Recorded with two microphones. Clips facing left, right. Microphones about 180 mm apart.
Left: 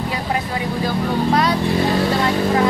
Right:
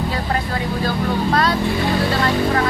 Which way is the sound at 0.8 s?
15° left (ahead or behind).